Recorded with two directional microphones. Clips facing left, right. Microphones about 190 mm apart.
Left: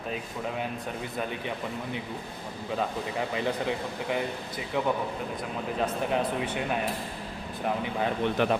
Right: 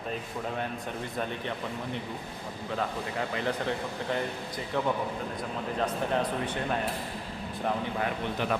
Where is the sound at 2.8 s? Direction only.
15° left (ahead or behind).